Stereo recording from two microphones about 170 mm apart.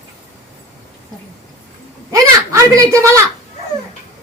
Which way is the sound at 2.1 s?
20° right (ahead or behind).